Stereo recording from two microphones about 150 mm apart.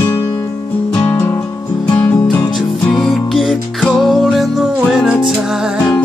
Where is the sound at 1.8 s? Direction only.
30° left (ahead or behind).